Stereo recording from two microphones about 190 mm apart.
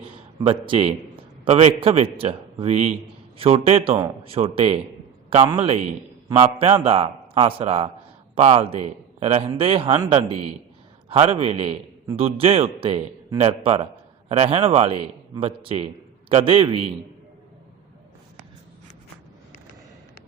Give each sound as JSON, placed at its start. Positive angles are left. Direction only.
{"t": 0.0, "sound": "a man's voice", "side_deg": -25}